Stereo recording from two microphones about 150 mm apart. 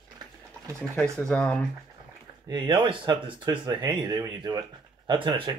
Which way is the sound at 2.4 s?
30° right (ahead or behind).